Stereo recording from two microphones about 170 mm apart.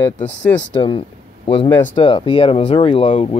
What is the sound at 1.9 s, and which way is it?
Speech, 30° left (ahead or behind).